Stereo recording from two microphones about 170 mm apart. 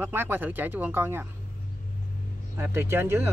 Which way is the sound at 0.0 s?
10° right (ahead or behind).